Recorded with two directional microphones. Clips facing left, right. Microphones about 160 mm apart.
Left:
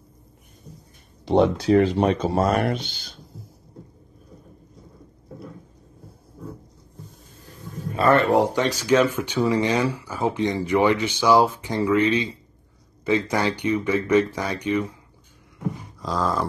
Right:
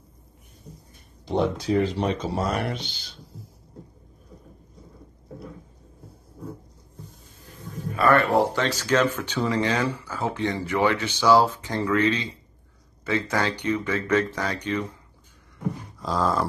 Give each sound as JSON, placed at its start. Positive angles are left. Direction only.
{"t": 1.2, "sound": "speech", "side_deg": 70}
{"t": 7.9, "sound": "speech", "side_deg": 25}
{"t": 16.0, "sound": "a sound", "side_deg": 0}